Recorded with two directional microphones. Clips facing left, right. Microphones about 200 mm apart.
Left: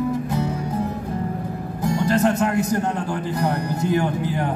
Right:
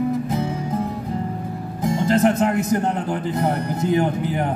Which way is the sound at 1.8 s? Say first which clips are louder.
Right 2 dB; 20° right (ahead or behind).